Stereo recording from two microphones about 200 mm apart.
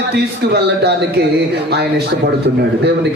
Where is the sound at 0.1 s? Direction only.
55° right (ahead or behind).